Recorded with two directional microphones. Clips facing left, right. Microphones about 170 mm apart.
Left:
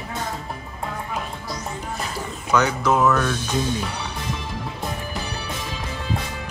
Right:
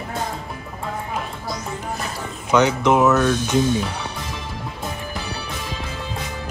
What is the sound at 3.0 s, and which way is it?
Speech, 5° right (ahead or behind).